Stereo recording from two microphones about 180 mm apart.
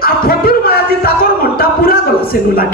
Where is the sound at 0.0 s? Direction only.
55° left (ahead or behind).